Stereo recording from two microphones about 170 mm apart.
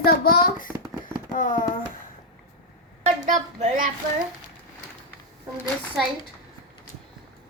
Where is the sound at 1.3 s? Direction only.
50° left (ahead or behind).